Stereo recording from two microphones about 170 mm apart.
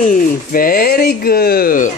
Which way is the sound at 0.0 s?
55° left (ahead or behind).